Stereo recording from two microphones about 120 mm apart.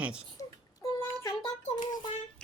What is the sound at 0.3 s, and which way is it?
Child singing, 30° left (ahead or behind).